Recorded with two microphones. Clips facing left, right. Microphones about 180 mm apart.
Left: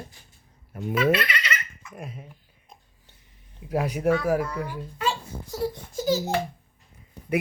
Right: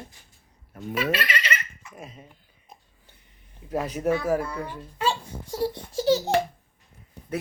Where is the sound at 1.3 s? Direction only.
35° right (ahead or behind).